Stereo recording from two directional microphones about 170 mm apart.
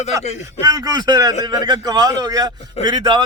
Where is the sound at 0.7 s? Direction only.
25° right (ahead or behind).